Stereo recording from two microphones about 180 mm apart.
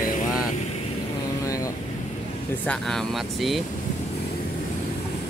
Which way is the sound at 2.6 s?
5° left (ahead or behind).